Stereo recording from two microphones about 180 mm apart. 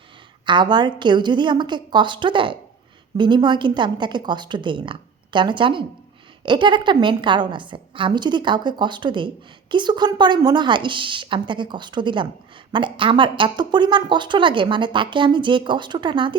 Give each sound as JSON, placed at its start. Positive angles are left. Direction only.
{"t": 0.4, "sound": "a woman's voice", "side_deg": -25}